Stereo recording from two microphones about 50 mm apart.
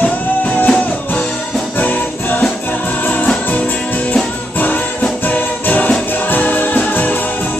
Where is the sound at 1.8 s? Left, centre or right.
Left.